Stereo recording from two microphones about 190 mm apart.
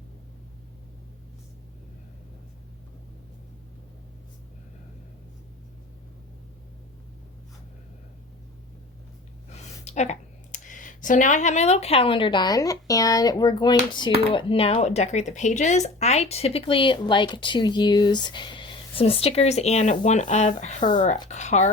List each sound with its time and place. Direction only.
9.5 s speech: 35° left (ahead or behind)